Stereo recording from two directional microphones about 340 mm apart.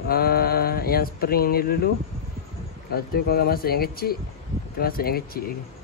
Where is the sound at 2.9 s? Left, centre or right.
Left.